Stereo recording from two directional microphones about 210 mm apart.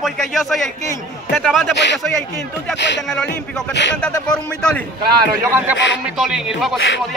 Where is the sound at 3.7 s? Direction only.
55° left (ahead or behind).